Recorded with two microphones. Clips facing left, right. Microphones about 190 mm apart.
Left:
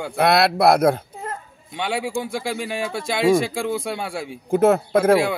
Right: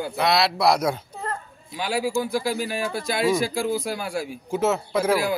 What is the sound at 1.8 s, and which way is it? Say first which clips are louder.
Speech: even; 25° left (ahead or behind).